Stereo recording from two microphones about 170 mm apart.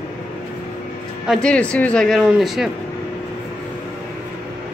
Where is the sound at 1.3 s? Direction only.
5° left (ahead or behind).